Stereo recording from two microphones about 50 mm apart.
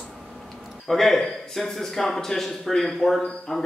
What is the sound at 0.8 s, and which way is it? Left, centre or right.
Speech, centre.